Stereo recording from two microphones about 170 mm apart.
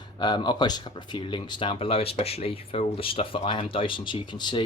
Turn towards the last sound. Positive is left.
turn(degrees=25)  # may be behind; listen again after turning